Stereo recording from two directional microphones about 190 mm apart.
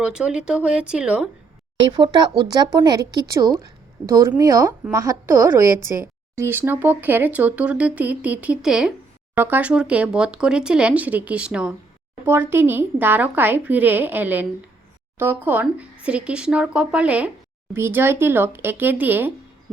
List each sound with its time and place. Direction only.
0.0 s speech: 5° right (ahead or behind)
1.8 s speech: 25° right (ahead or behind)